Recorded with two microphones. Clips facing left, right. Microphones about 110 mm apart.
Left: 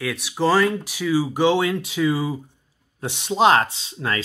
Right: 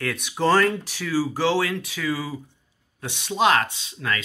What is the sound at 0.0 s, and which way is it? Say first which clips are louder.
Speech: left 1 dB; 5° left (ahead or behind).